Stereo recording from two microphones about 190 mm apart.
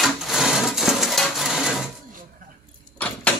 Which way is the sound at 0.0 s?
Centre (ahead or behind).